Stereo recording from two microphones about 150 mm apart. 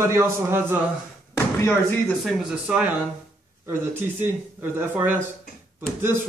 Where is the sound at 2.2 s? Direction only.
5° right (ahead or behind).